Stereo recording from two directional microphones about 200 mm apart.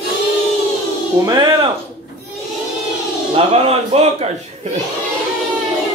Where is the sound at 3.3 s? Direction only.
30° right (ahead or behind).